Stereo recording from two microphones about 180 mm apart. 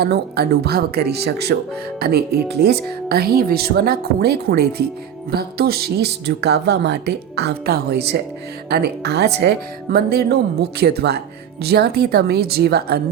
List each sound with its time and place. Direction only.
0.0 s speech: 60° right (ahead or behind)